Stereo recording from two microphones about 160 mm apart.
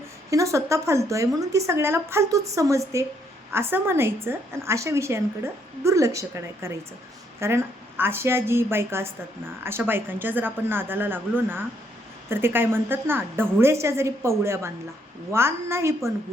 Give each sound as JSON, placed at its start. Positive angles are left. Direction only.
{"t": 0.3, "sound": "a woman's voice", "side_deg": -20}